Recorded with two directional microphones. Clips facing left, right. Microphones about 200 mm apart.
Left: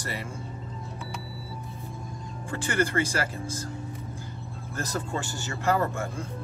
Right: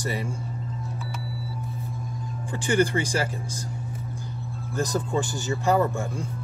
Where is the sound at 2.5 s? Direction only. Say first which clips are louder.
Right 4 dB; 15° right (ahead or behind).